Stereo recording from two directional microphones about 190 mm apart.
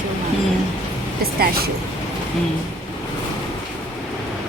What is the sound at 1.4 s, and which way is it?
Speech, 50° right (ahead or behind).